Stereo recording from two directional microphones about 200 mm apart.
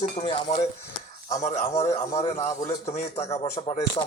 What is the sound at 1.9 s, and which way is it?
Speech, 30° left (ahead or behind).